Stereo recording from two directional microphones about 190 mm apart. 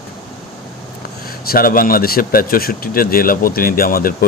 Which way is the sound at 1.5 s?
50° left (ahead or behind).